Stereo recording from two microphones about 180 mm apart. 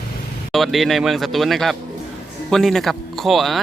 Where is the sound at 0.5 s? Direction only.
Centre (ahead or behind).